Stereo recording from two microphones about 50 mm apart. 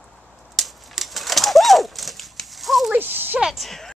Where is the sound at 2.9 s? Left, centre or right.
Right.